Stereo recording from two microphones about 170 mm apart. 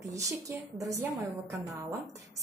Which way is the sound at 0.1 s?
20° right (ahead or behind).